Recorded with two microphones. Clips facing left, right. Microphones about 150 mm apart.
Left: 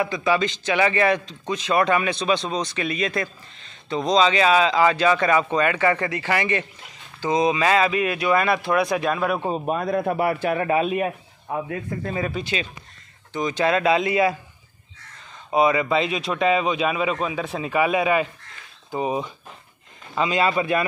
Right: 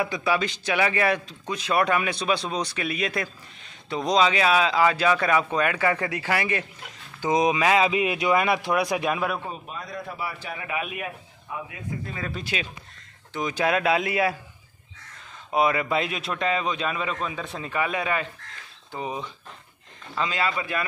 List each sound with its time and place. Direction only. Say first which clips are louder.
0.0 s speech: left 3 dB; 10° right (ahead or behind)
9.7 s a man's voice: left 13 dB; 55° left (ahead or behind)
10.7 s a man's voice: left 6 dB; 35° left (ahead or behind)
11.4 s speech: left 7 dB; 50° left (ahead or behind)
12.3 s speech: left 4 dB; centre (ahead or behind)
15.5 s a man's voice: left 4 dB; centre (ahead or behind); by 20.8 s 20° left (ahead or behind)